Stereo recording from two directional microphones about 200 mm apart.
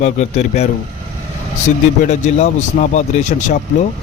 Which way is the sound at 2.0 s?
35° left (ahead or behind).